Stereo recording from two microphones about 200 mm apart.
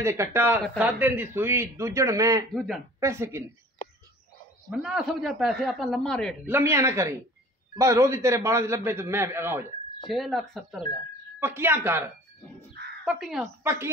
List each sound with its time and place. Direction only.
0.0 s a man's voice: 15° right (ahead or behind)
2.5 s speech: centre (ahead or behind)
3.0 s a man's voice: 15° right (ahead or behind)
4.6 s speech: centre (ahead or behind)
6.4 s a man's voice: 10° right (ahead or behind)
10.0 s speech: centre (ahead or behind)
11.3 s a man's voice: 10° right (ahead or behind)